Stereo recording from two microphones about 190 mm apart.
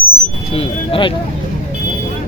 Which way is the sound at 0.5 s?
30° left (ahead or behind).